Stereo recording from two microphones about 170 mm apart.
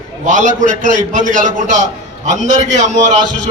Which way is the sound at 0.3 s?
50° right (ahead or behind).